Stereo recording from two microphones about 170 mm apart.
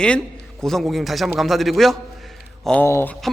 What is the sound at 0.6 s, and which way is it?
A man's voice, centre (ahead or behind).